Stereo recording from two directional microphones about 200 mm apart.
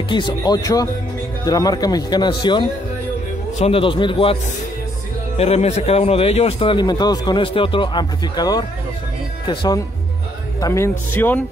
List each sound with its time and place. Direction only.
0.1 s a man's voice: 20° left (ahead or behind)
5.4 s a man's voice: 30° left (ahead or behind); by 11.4 s 10° left (ahead or behind)